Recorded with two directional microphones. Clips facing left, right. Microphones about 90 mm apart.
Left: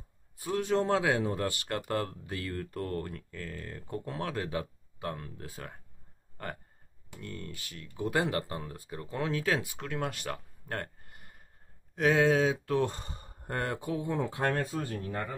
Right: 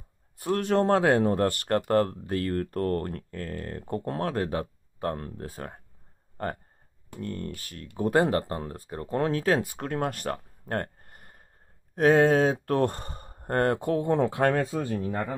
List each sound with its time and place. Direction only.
0.4 s speech: 60° right (ahead or behind)